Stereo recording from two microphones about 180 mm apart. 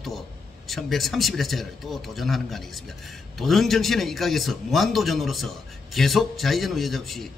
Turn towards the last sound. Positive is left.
turn(degrees=0)  # may be behind; listen again after turning